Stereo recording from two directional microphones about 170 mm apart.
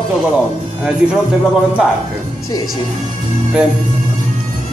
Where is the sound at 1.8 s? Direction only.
5° right (ahead or behind).